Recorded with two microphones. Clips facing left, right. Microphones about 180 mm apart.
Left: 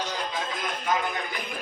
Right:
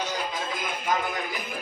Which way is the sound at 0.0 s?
5° right (ahead or behind).